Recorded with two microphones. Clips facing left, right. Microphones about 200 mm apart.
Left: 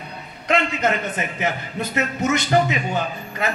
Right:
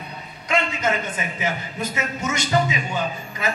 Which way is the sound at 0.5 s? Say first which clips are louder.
Left 2 dB; 60° left (ahead or behind).